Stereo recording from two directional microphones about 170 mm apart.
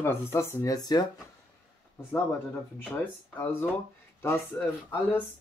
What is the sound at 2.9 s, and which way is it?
Speech, 10° left (ahead or behind).